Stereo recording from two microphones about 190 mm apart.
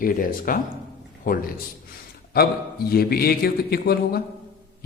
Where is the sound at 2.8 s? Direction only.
55° left (ahead or behind).